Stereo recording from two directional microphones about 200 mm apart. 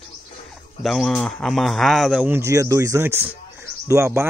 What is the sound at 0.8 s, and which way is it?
Speech, centre (ahead or behind).